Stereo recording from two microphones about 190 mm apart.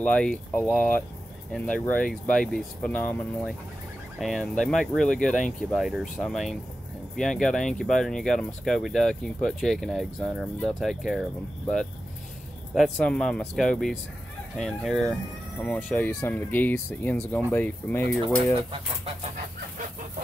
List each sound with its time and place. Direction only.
0.0 s speech: 5° left (ahead or behind)
12.7 s speech: centre (ahead or behind)
18.2 s speech: 25° right (ahead or behind)